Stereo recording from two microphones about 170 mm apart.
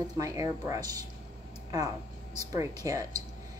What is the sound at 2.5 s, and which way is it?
Speech, 20° right (ahead or behind).